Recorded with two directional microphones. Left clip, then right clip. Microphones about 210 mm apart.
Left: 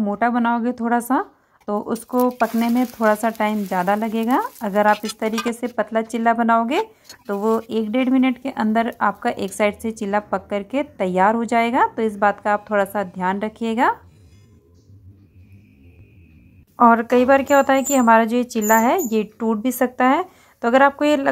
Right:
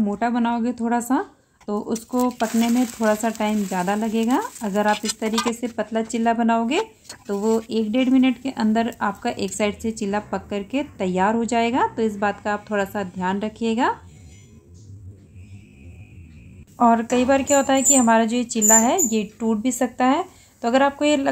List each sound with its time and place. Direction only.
0.0 s speech: 15° left (ahead or behind)
16.7 s speech: 15° left (ahead or behind)